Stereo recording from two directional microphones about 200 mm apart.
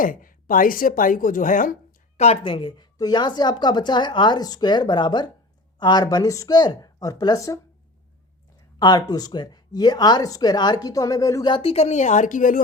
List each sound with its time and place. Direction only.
0.0 s speech: 45° left (ahead or behind); by 7.6 s 15° left (ahead or behind)
8.8 s speech: 20° left (ahead or behind); by 12.6 s 40° left (ahead or behind)